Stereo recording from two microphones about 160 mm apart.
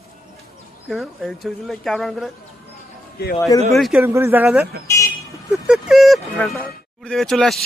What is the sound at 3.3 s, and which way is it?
Speech, 20° left (ahead or behind).